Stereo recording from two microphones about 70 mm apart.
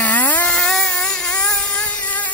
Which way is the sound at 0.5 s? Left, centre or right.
Centre.